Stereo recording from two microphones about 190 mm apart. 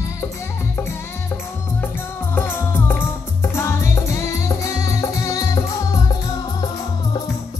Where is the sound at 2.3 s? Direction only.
10° left (ahead or behind).